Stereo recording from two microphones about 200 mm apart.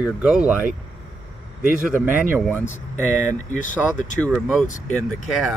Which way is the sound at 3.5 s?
40° left (ahead or behind).